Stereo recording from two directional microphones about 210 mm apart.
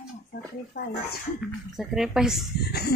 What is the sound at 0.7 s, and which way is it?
Speech, 35° left (ahead or behind).